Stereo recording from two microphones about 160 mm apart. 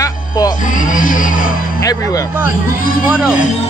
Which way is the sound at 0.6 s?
55° left (ahead or behind).